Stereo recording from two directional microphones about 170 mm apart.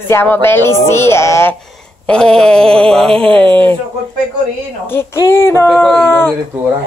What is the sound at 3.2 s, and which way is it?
Speech, 30° right (ahead or behind).